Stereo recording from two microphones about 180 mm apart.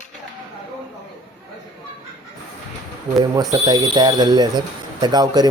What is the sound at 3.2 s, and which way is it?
Speech, 20° right (ahead or behind).